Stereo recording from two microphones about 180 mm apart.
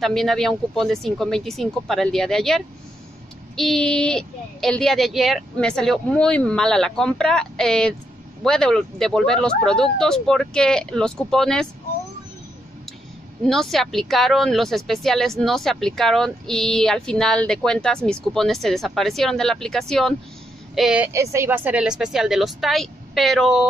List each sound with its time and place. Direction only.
0.0 s speech: centre (ahead or behind)
13.4 s a woman's voice: centre (ahead or behind)